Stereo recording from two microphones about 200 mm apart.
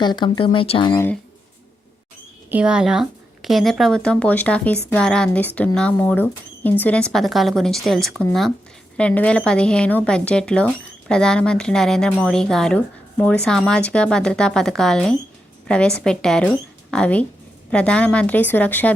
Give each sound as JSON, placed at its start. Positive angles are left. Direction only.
{"t": 0.0, "sound": "speech", "side_deg": 20}
{"t": 0.9, "sound": "a woman's voice", "side_deg": 10}
{"t": 2.5, "sound": "a woman's voice", "side_deg": -5}